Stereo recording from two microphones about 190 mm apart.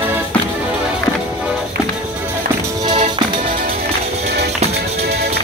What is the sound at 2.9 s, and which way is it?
Music, 25° right (ahead or behind).